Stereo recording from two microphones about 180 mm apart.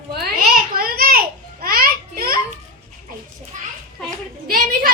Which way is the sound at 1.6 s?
55° right (ahead or behind).